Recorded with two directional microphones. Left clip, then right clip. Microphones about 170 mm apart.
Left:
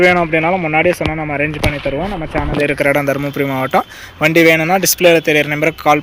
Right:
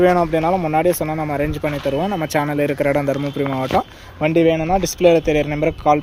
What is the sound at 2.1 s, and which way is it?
Speech, 10° right (ahead or behind).